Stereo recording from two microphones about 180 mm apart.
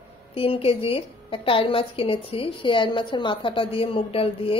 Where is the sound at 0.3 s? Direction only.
30° left (ahead or behind).